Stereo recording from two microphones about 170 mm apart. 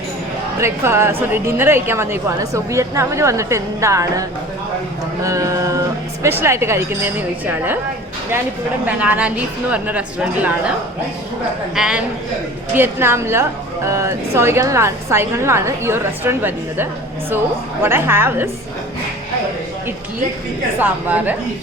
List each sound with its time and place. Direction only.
0.6 s a woman's voice: 15° right (ahead or behind)
9.0 s a woman's voice: 10° right (ahead or behind)
11.7 s a man's voice: 5° right (ahead or behind)
20.7 s a woman's voice: 10° right (ahead or behind)